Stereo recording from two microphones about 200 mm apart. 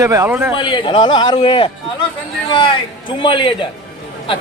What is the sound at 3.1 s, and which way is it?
Speech, 25° left (ahead or behind).